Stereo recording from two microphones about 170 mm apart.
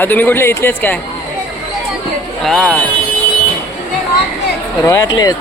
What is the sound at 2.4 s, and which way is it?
Speech, centre (ahead or behind).